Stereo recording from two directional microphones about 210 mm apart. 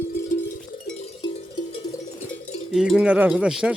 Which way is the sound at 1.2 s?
20° left (ahead or behind).